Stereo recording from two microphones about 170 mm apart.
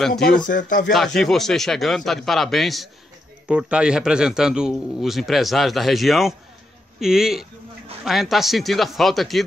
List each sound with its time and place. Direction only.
0.7 s speech: 55° left (ahead or behind)
0.9 s a man's voice: 5° left (ahead or behind)